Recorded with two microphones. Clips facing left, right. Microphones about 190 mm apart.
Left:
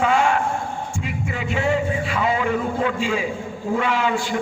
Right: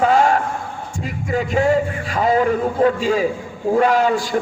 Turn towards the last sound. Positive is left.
turn(degrees=-40)  # may be behind; listen again after turning